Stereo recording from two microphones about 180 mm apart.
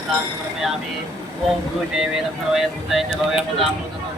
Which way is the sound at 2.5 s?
Centre (ahead or behind).